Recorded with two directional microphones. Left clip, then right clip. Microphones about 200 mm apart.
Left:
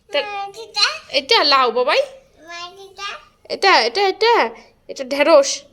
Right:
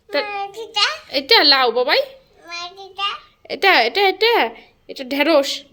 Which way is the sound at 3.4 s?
20° right (ahead or behind).